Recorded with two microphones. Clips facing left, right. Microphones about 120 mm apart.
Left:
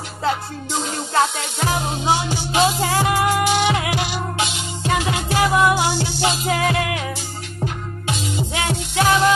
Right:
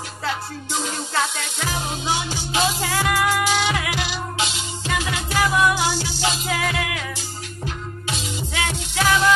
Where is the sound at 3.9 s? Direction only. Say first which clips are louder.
Left 3 dB; 45° left (ahead or behind).